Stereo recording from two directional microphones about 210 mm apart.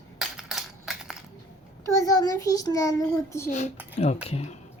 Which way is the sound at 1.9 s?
15° left (ahead or behind).